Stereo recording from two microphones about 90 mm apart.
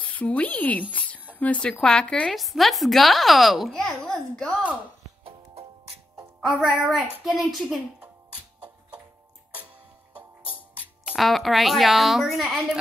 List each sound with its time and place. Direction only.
0.0 s speech: 15° left (ahead or behind)
0.9 s a sound: 15° left (ahead or behind)
1.4 s speech: 15° left (ahead or behind)
2.3 s a child's voice: centre (ahead or behind)
6.6 s a child's voice: centre (ahead or behind)
10.1 s music: 15° right (ahead or behind)
11.1 s a child's voice: centre (ahead or behind)